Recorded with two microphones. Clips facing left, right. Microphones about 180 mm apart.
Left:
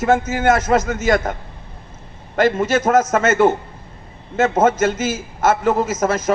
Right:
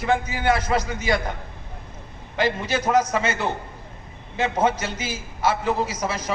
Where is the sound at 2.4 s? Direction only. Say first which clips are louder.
Left 7 dB; 45° left (ahead or behind).